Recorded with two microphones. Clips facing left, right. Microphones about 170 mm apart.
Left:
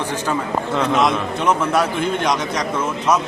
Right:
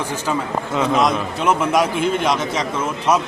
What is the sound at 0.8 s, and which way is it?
A man's voice, centre (ahead or behind).